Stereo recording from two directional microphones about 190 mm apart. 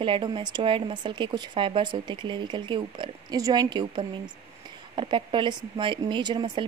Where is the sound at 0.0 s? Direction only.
25° right (ahead or behind).